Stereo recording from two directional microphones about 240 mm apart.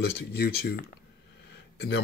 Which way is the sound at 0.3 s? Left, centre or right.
Left.